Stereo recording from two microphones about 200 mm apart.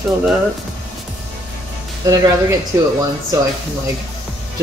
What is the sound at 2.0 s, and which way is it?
Speech, 15° right (ahead or behind).